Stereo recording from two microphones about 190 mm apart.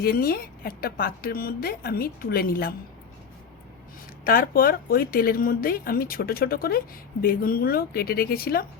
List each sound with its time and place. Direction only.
0.0 s a woman's voice: 50° left (ahead or behind)
4.2 s a woman's voice: 50° left (ahead or behind)